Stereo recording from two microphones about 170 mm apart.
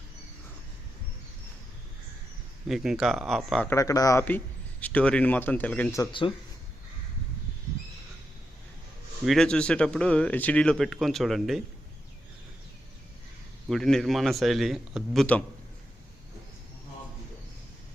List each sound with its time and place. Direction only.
2.6 s speech: centre (ahead or behind)
3.7 s a man's voice: 20° left (ahead or behind)
6.0 s speech: 30° left (ahead or behind)
9.2 s speech: centre (ahead or behind)
13.7 s speech: centre (ahead or behind)